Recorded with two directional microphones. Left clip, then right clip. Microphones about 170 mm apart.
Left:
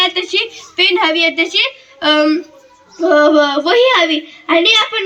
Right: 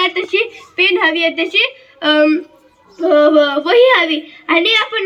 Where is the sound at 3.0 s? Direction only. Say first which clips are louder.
Even; 20° left (ahead or behind).